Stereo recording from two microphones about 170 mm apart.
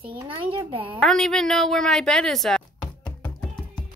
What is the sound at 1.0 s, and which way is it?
Speech, centre (ahead or behind).